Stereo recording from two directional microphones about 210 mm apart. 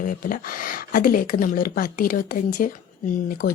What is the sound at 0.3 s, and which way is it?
A woman's voice, 40° left (ahead or behind).